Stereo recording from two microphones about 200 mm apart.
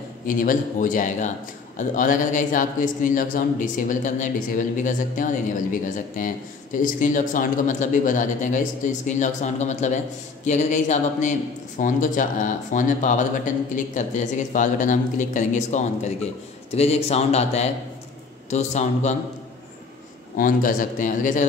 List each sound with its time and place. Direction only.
0.3 s a man's voice: 45° left (ahead or behind)
20.3 s a man's voice: 45° left (ahead or behind)